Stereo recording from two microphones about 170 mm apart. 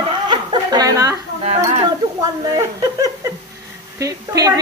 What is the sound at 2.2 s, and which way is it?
A woman's voice, 20° right (ahead or behind).